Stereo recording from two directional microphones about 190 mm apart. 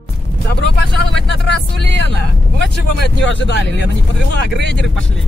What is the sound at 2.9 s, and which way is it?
Speech, 70° left (ahead or behind).